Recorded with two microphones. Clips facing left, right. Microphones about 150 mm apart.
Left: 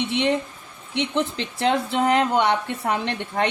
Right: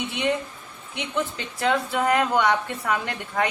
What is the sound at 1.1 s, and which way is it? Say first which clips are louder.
Speech: left 3 dB; 30° left (ahead or behind).